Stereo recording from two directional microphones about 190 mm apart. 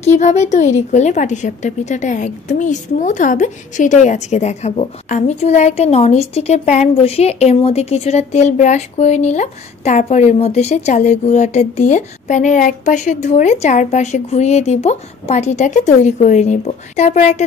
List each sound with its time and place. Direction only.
0.0 s a woman's voice: 35° left (ahead or behind)